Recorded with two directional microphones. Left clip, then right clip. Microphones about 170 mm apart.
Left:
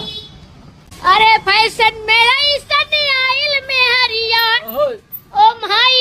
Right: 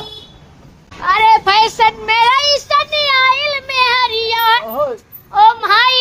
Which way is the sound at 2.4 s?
Centre (ahead or behind).